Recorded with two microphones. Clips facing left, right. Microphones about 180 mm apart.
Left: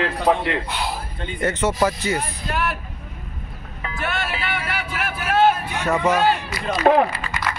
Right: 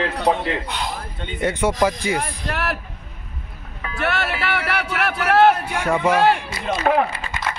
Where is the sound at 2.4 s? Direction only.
70° right (ahead or behind).